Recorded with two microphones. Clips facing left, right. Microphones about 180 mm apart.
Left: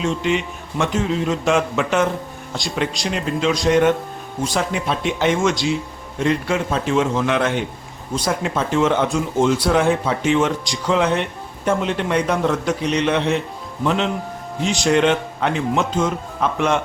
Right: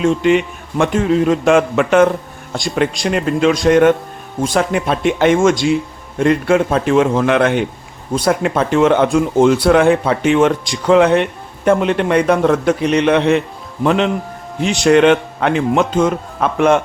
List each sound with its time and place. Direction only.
0.0 s speech: 55° right (ahead or behind)